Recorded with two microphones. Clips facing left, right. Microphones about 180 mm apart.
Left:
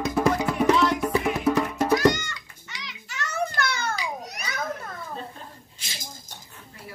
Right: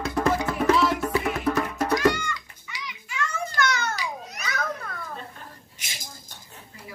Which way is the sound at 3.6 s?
30° left (ahead or behind).